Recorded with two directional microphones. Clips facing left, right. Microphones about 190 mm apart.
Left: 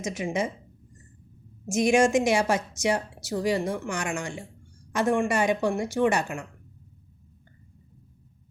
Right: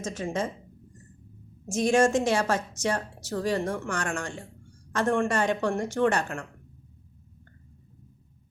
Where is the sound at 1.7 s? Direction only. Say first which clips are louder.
Left 1 dB; 10° left (ahead or behind).